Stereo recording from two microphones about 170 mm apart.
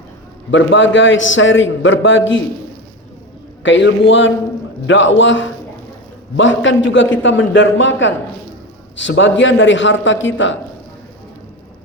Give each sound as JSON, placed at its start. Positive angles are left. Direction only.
{"t": 0.5, "sound": "a man's voice", "side_deg": 90}
{"t": 3.6, "sound": "a man's voice", "side_deg": 90}